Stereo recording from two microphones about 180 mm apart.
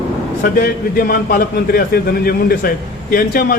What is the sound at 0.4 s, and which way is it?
A man's voice, 55° left (ahead or behind).